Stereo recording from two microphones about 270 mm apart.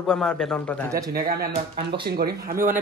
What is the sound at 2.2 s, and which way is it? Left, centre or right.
Speech, right.